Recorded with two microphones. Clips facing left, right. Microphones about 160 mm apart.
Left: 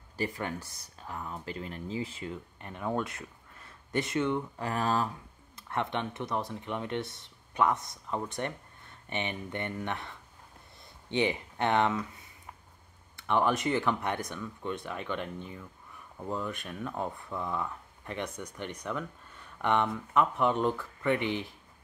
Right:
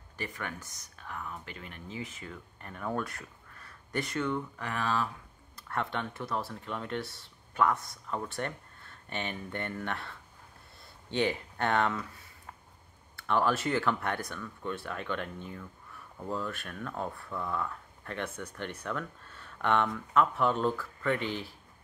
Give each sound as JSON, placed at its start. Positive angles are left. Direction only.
{"t": 0.2, "sound": "speech", "side_deg": 30}
{"t": 4.6, "sound": "speech", "side_deg": 40}
{"t": 5.6, "sound": "speech", "side_deg": 20}
{"t": 13.1, "sound": "speech", "side_deg": 20}